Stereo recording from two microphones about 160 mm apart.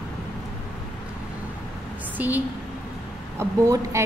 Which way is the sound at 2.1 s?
10° right (ahead or behind).